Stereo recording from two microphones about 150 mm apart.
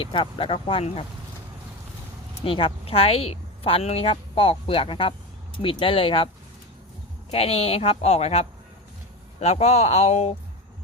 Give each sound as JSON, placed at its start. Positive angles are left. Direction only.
{"t": 0.0, "sound": "a woman's voice", "side_deg": 35}
{"t": 2.4, "sound": "a woman's voice", "side_deg": 35}
{"t": 7.3, "sound": "a woman's voice", "side_deg": 40}